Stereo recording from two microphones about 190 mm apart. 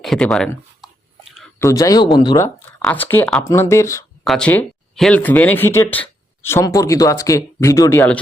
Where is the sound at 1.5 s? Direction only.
15° left (ahead or behind).